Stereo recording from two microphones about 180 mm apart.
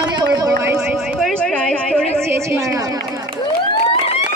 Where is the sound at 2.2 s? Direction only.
15° right (ahead or behind).